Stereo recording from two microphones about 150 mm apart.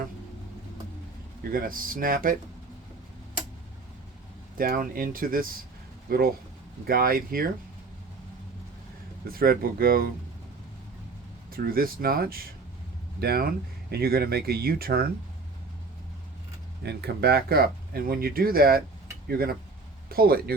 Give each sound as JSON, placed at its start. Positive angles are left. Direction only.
{"t": 1.5, "sound": "speech", "side_deg": -70}
{"t": 4.5, "sound": "speech", "side_deg": -75}
{"t": 9.2, "sound": "speech", "side_deg": -80}
{"t": 11.5, "sound": "speech", "side_deg": -75}
{"t": 16.8, "sound": "speech", "side_deg": -90}